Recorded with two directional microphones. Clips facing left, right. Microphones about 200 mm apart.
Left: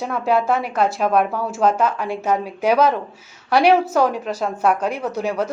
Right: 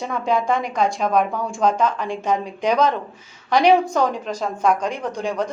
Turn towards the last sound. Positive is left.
turn(degrees=5)  # may be behind; listen again after turning